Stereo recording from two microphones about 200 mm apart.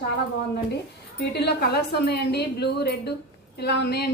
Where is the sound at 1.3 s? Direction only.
55° left (ahead or behind).